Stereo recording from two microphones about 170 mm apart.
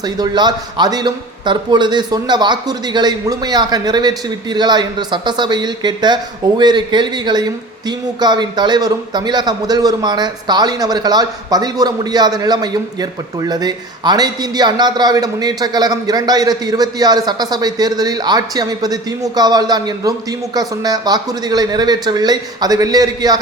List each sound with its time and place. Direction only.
0.0 s a man's voice: 25° right (ahead or behind)